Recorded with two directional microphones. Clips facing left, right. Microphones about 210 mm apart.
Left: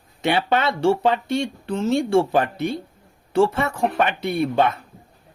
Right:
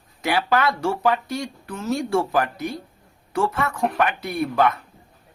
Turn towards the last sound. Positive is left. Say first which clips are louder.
# left 1 dB
turn(degrees=25)  # may be behind; listen again after turning